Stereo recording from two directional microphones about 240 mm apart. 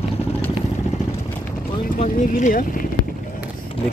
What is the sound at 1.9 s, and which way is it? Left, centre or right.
Speech, left.